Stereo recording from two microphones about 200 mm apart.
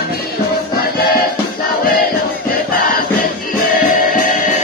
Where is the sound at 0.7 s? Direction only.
50° left (ahead or behind).